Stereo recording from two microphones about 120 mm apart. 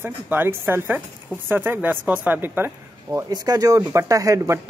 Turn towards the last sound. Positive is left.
turn(degrees=-30)  # may be behind; listen again after turning